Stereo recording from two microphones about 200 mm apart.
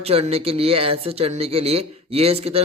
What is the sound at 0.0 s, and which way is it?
Speech, 30° right (ahead or behind).